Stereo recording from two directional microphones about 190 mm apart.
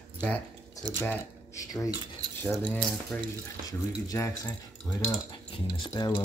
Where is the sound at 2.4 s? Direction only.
5° left (ahead or behind).